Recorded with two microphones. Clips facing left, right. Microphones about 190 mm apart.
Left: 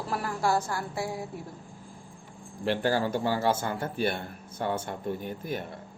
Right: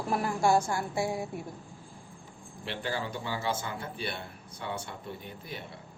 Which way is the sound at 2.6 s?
45° left (ahead or behind).